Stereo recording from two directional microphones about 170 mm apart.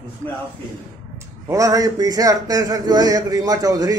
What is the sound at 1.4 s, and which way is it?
Speech, 20° right (ahead or behind).